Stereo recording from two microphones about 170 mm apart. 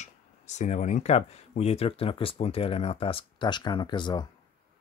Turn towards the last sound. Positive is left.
turn(degrees=25)  # may be behind; listen again after turning